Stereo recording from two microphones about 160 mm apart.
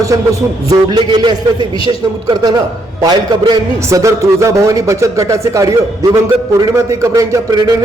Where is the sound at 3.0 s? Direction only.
25° right (ahead or behind).